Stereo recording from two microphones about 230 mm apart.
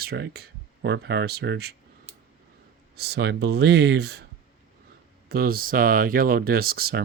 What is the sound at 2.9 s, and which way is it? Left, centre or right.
Speech, right.